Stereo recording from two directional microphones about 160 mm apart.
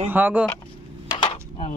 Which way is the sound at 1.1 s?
35° left (ahead or behind).